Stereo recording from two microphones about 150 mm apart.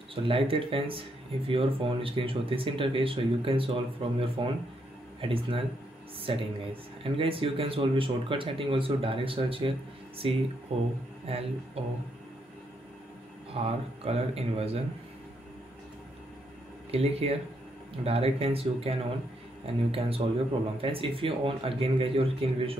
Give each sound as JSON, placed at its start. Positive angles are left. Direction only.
{"t": 0.1, "sound": "speech", "side_deg": -35}
{"t": 13.6, "sound": "speech", "side_deg": -40}
{"t": 16.9, "sound": "speech", "side_deg": -40}